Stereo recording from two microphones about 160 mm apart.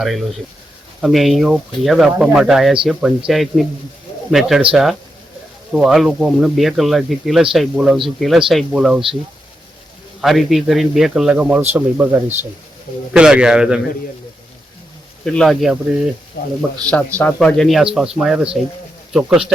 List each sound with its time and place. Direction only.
0.0 s speech: centre (ahead or behind)
10.2 s speech: centre (ahead or behind)
15.2 s speech: 5° left (ahead or behind)
16.4 s speech: 80° left
16.9 s speech: 10° left (ahead or behind)